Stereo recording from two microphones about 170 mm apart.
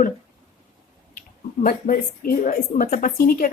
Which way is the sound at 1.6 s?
60° left (ahead or behind).